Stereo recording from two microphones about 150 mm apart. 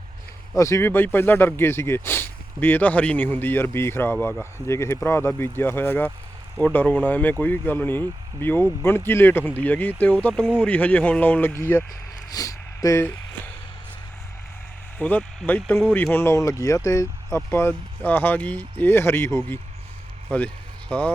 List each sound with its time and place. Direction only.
0.5 s speech: 20° left (ahead or behind)
14.9 s speech: 10° left (ahead or behind)